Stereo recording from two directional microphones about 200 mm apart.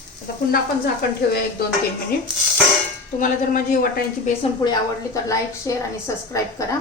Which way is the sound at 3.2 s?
40° left (ahead or behind).